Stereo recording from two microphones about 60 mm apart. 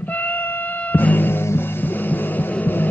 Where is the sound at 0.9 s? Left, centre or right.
Left.